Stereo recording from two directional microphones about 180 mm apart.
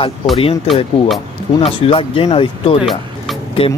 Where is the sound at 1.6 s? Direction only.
30° left (ahead or behind).